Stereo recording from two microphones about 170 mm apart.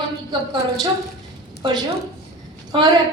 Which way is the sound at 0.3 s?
25° right (ahead or behind).